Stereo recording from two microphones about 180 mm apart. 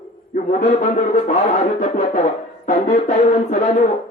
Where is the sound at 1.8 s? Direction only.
45° left (ahead or behind).